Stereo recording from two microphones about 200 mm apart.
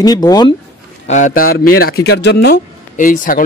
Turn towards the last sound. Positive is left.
turn(degrees=40)  # may be behind; listen again after turning